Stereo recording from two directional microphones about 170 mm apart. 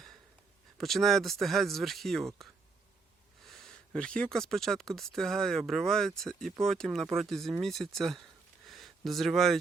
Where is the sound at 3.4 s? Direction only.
Centre (ahead or behind).